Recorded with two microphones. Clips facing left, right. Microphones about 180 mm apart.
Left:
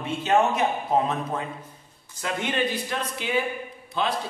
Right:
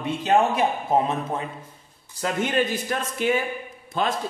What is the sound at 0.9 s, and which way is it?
Speech, 25° right (ahead or behind).